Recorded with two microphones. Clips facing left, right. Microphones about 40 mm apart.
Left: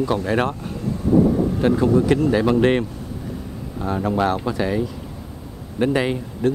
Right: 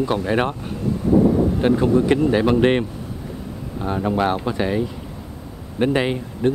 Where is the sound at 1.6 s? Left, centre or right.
Right.